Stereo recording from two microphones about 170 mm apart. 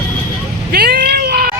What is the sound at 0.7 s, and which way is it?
Sheep, 65° right (ahead or behind).